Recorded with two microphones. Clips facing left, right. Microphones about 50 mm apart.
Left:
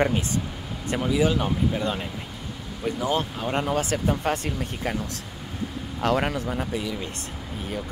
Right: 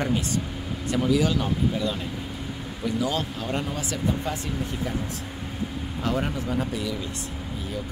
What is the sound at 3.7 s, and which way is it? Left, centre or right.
Speech, left.